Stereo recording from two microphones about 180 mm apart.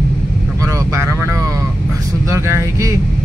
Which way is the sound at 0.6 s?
15° right (ahead or behind).